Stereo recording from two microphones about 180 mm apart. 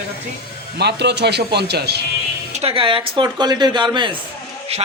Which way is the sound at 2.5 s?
35° right (ahead or behind).